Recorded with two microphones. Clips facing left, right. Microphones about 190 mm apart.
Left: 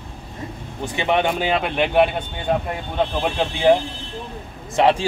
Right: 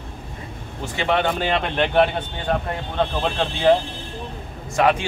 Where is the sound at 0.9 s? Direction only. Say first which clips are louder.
Left 1 dB; 15° left (ahead or behind).